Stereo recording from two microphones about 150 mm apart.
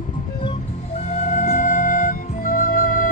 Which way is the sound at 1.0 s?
50° left (ahead or behind).